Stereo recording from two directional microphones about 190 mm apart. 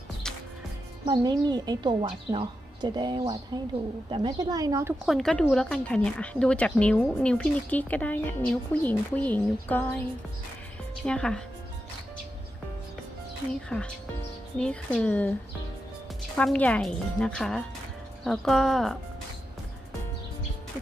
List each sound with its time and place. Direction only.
1.0 s speech: 20° right (ahead or behind)
5.0 s a woman's voice: centre (ahead or behind)
11.0 s a woman's voice: 5° left (ahead or behind)
13.7 s a woman's voice: 5° left (ahead or behind)
16.4 s a woman's voice: 5° left (ahead or behind)